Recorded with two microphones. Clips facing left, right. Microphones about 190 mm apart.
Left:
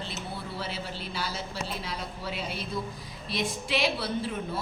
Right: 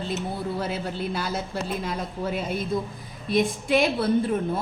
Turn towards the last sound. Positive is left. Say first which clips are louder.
# right 8 dB
turn(degrees=-50)  # may be behind; listen again after turning